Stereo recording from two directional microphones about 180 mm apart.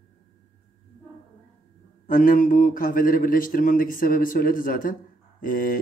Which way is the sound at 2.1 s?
50° left (ahead or behind).